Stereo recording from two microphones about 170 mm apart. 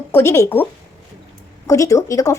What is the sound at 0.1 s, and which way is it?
Speech, 15° left (ahead or behind).